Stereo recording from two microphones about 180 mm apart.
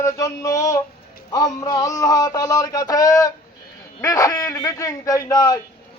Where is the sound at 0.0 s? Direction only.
15° left (ahead or behind).